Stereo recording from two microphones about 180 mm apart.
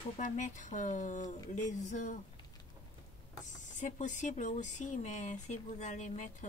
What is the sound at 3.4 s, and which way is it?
Speech, 40° left (ahead or behind).